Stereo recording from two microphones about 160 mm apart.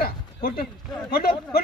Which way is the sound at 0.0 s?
65° left (ahead or behind).